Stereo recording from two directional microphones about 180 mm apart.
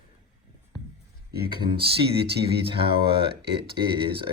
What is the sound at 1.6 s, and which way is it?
Speech, 25° right (ahead or behind).